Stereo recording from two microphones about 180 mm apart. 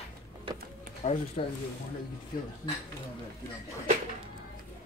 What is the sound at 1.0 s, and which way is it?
Speech, 40° left (ahead or behind).